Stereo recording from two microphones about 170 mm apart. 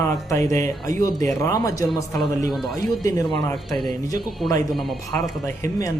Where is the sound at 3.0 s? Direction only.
20° left (ahead or behind).